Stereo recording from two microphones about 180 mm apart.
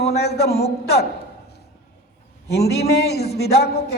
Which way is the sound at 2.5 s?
65° left (ahead or behind).